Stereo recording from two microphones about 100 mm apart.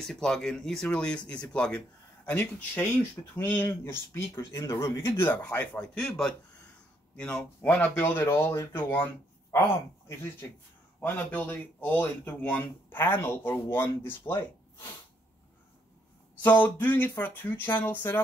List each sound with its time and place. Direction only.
0.0 s speech: 5° left (ahead or behind); by 4.6 s 25° left (ahead or behind)
4.6 s speech: 35° left (ahead or behind)
4.9 s speech: 25° left (ahead or behind)
11.0 s speech: 20° left (ahead or behind)
16.4 s speech: 15° left (ahead or behind)